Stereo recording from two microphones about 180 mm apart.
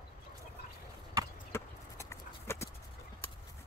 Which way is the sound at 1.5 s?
15° left (ahead or behind).